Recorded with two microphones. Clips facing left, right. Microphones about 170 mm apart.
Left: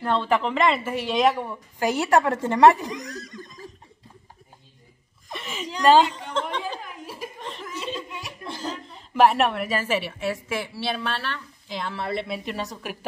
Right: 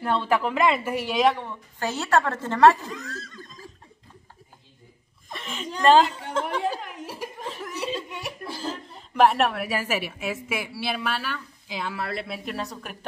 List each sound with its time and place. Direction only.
0.0 s a woman's voice: 10° right (ahead or behind)
1.4 s speech: 10° left (ahead or behind)
5.3 s whimper: centre (ahead or behind)
5.9 s a man's voice: centre (ahead or behind)
6.8 s chuckle: 75° right (ahead or behind)
7.4 s chuckle: 5° right (ahead or behind)
8.3 s a woman's voice: 5° right (ahead or behind)